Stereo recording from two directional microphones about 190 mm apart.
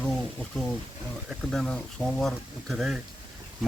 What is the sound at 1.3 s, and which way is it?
Speech, centre (ahead or behind).